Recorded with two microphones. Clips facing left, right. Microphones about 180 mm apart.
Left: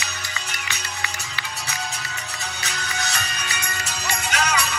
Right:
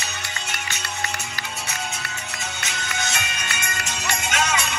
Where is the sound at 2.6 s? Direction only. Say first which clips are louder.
Even; 35° left (ahead or behind).